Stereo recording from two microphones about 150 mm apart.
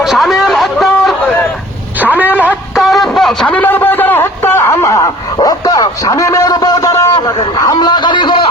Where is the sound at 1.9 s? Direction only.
10° right (ahead or behind); by 8.3 s 30° left (ahead or behind).